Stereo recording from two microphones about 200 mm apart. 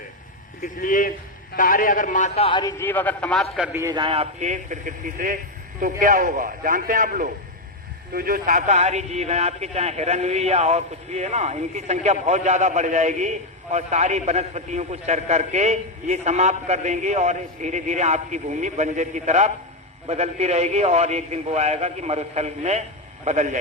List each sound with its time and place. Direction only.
0.6 s a man's voice: 40° left (ahead or behind); by 3.4 s 5° left (ahead or behind)
3.5 s a man's voice: 5° right (ahead or behind); by 23.6 s 35° right (ahead or behind)